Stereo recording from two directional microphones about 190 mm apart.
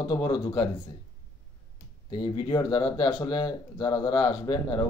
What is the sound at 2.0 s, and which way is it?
Speech, 25° left (ahead or behind).